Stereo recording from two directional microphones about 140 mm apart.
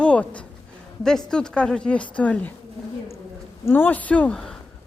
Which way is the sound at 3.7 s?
15° left (ahead or behind).